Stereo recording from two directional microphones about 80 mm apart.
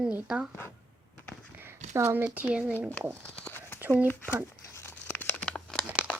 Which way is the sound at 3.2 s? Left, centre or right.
Centre.